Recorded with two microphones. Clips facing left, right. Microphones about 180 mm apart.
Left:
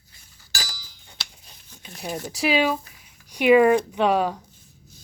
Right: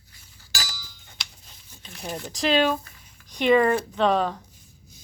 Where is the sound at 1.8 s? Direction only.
10° left (ahead or behind).